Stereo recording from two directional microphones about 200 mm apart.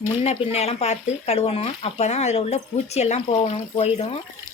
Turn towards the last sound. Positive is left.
turn(degrees=30)  # may be behind; listen again after turning